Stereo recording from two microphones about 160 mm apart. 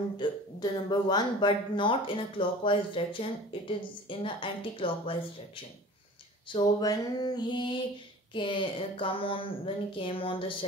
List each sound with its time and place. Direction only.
0.2 s speech: 25° left (ahead or behind)
6.5 s a sound: 25° left (ahead or behind)
8.3 s speech: 30° left (ahead or behind)